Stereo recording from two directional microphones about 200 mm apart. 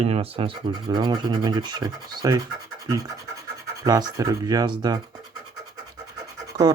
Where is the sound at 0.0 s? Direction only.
30° right (ahead or behind).